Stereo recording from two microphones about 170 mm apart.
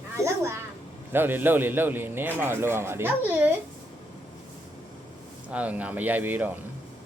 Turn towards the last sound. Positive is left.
turn(degrees=-10)  # may be behind; listen again after turning